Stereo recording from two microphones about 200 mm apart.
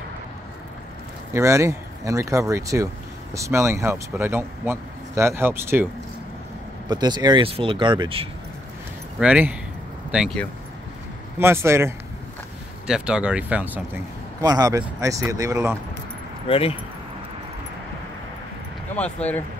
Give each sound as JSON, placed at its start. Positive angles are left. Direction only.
{"t": 1.3, "sound": "speech", "side_deg": -15}
{"t": 6.9, "sound": "speech", "side_deg": -20}
{"t": 9.2, "sound": "speech", "side_deg": -5}
{"t": 11.3, "sound": "speech", "side_deg": -10}
{"t": 14.4, "sound": "speech", "side_deg": -20}
{"t": 16.4, "sound": "speech", "side_deg": 30}
{"t": 19.0, "sound": "speech", "side_deg": 10}